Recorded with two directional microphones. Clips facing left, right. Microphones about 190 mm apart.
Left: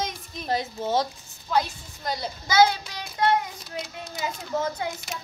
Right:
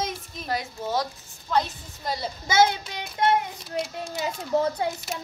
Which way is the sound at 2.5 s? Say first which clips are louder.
Left 1 dB; 25° right (ahead or behind).